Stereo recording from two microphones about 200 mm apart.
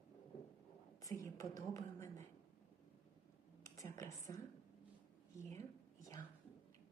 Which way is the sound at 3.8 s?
15° left (ahead or behind).